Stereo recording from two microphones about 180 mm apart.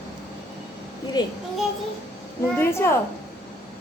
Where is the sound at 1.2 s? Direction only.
25° left (ahead or behind).